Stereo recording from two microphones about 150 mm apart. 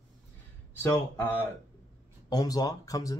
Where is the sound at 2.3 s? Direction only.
25° left (ahead or behind).